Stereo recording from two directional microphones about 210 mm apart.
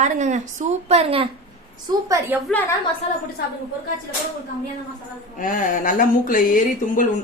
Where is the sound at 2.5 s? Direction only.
10° left (ahead or behind).